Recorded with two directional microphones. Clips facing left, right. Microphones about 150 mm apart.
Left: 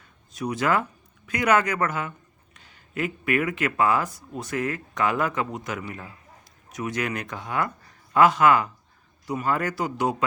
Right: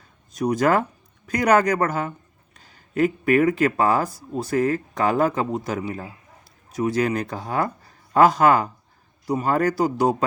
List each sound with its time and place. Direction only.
0.3 s a man's voice: 40° right (ahead or behind)